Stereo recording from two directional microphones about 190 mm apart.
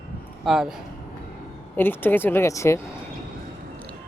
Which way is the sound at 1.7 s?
10° left (ahead or behind).